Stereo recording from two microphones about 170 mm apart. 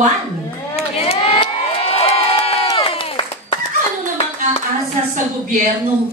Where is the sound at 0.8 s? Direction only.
35° left (ahead or behind).